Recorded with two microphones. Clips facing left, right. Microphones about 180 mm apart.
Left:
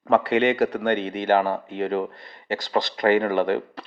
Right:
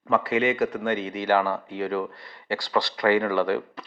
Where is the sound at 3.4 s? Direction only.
50° left (ahead or behind).